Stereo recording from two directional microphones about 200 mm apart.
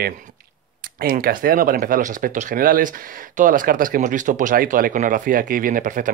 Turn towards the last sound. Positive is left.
turn(degrees=-40)  # may be behind; listen again after turning